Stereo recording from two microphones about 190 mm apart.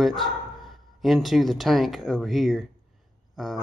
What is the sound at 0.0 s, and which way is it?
Speech, centre (ahead or behind).